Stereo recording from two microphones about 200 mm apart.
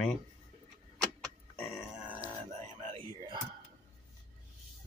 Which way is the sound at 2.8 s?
30° right (ahead or behind).